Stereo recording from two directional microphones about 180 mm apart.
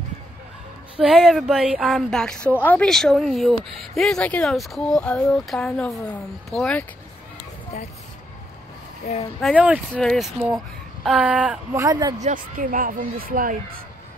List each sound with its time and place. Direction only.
0.9 s speech: centre (ahead or behind)
9.4 s speech: centre (ahead or behind)
11.8 s speech: 20° right (ahead or behind)
12.2 s speech: 45° right (ahead or behind)